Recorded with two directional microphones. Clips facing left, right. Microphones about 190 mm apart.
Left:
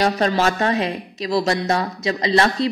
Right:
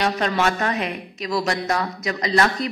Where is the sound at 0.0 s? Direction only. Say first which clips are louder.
Left 3 dB; 35° left (ahead or behind).